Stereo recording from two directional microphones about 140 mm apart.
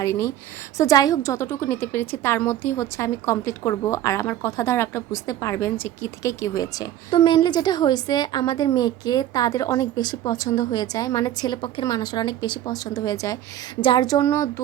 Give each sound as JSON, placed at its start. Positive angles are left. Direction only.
{"t": 0.0, "sound": "a woman's voice", "side_deg": 20}